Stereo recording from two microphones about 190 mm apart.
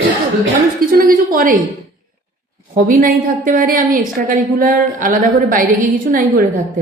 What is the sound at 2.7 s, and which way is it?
A woman's voice, 45° right (ahead or behind).